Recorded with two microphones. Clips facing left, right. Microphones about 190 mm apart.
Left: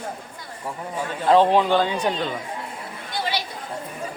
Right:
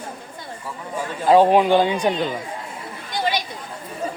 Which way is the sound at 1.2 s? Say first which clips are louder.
Right 3 dB; 10° right (ahead or behind).